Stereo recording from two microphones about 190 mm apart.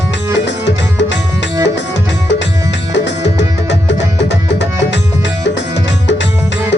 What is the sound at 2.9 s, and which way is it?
Music, 70° left (ahead or behind).